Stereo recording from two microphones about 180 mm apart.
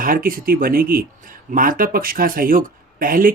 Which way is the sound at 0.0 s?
50° right (ahead or behind).